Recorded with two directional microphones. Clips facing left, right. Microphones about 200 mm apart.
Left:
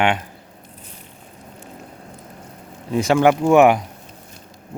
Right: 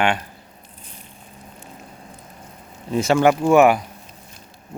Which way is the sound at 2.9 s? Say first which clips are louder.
Left 1 dB; 15° left (ahead or behind).